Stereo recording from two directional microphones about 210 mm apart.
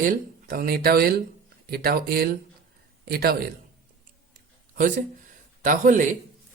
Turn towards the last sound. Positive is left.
turn(degrees=-35)  # may be behind; listen again after turning